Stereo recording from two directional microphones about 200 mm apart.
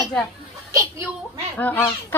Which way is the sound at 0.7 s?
15° right (ahead or behind).